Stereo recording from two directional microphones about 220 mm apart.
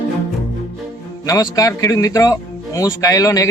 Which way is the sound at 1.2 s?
15° left (ahead or behind).